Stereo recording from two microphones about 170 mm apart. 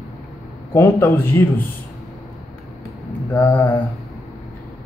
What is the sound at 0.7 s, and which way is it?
Speech, 15° left (ahead or behind).